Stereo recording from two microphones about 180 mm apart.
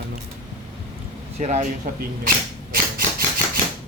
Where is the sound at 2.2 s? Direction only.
50° right (ahead or behind).